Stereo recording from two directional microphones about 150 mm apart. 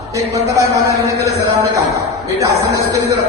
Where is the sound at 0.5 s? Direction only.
20° right (ahead or behind).